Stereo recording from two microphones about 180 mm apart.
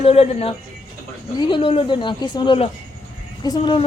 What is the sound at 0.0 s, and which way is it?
Speech, 35° left (ahead or behind).